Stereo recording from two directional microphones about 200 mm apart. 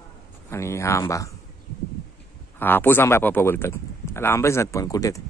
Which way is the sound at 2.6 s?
10° left (ahead or behind).